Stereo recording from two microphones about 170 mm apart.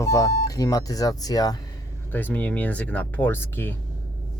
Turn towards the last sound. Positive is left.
turn(degrees=10)  # may be behind; listen again after turning